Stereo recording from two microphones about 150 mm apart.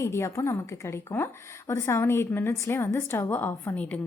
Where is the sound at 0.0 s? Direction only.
20° left (ahead or behind).